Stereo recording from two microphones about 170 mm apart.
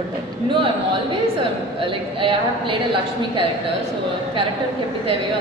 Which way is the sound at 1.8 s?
30° right (ahead or behind).